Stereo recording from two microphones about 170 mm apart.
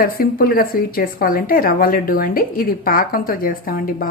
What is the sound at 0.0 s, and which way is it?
Speech, 60° left (ahead or behind).